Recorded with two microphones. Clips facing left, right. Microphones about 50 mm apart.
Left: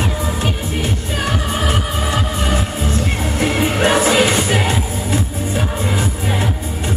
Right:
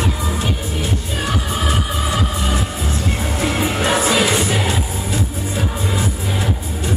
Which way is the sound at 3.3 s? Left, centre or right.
Left.